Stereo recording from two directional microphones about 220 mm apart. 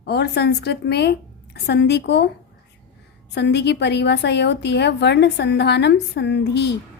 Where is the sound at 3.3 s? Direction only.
50° left (ahead or behind).